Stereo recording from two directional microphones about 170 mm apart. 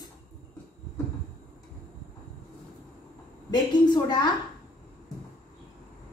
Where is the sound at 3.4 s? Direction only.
25° left (ahead or behind).